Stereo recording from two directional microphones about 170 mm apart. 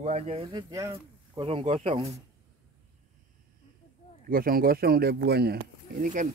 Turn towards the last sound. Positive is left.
turn(degrees=-50)  # may be behind; listen again after turning